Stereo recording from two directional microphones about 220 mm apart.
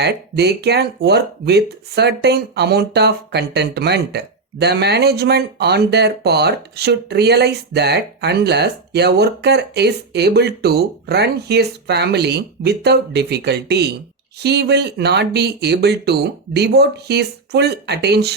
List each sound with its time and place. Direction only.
0.0 s speech: 50° right (ahead or behind)